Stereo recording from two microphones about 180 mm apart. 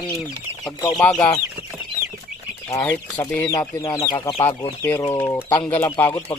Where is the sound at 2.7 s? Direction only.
15° left (ahead or behind).